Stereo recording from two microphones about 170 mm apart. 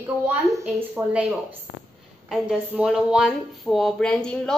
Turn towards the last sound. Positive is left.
turn(degrees=5)  # may be behind; listen again after turning